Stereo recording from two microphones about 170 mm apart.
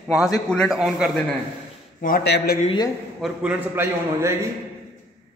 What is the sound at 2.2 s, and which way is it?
Speech, 75° left (ahead or behind).